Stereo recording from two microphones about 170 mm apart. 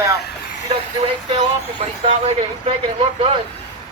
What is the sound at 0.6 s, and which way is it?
Speech, 35° right (ahead or behind).